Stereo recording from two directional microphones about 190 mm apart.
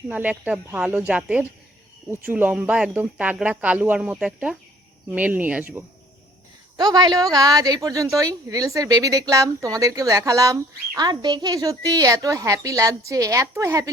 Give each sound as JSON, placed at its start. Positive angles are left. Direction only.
{"t": 0.1, "sound": "speech", "side_deg": -10}
{"t": 6.7, "sound": "speech", "side_deg": -20}